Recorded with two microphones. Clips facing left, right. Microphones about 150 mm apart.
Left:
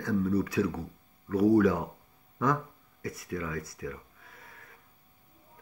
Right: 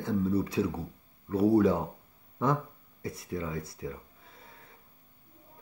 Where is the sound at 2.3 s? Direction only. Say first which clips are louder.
Even; 30° right (ahead or behind).